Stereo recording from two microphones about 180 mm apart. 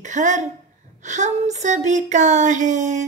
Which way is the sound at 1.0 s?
40° right (ahead or behind).